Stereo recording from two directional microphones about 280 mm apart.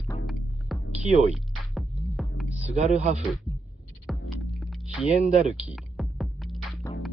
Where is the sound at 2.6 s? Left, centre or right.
Right.